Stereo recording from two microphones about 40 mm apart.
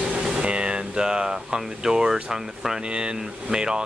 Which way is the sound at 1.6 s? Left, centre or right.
Centre.